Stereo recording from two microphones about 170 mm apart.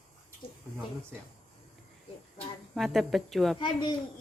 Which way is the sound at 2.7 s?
Centre (ahead or behind).